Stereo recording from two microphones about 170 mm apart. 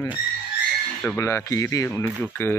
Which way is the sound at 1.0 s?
15° left (ahead or behind).